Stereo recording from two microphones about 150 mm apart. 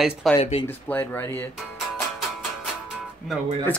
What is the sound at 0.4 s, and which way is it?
Speech, 40° left (ahead or behind).